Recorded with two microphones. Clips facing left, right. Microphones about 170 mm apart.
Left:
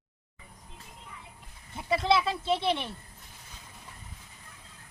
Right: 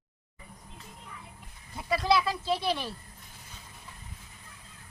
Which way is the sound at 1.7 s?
25° left (ahead or behind).